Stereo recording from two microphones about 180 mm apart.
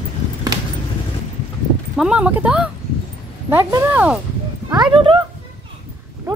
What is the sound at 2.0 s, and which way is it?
Speech, 5° right (ahead or behind).